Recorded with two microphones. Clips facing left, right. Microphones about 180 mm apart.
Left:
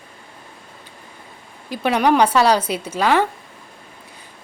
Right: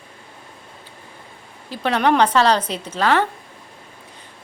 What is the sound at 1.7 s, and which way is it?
A woman's voice, 10° left (ahead or behind).